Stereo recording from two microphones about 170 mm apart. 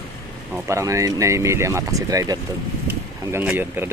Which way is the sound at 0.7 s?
20° right (ahead or behind).